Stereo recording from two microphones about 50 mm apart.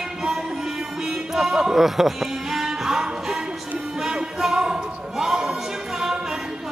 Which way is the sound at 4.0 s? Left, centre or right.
Centre.